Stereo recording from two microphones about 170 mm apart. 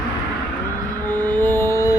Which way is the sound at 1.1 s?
10° left (ahead or behind).